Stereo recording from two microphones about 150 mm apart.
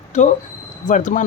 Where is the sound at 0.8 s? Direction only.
55° left (ahead or behind).